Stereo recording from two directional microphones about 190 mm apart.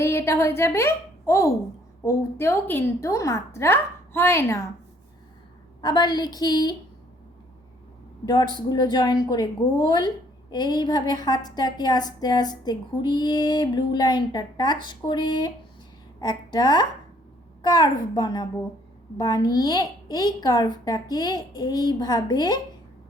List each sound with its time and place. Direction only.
0.0 s a woman's voice: 15° left (ahead or behind)
5.8 s a woman's voice: 20° left (ahead or behind)
8.2 s a woman's voice: 20° left (ahead or behind)